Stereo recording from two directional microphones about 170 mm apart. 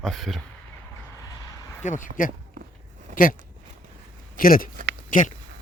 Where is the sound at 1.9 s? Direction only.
50° left (ahead or behind).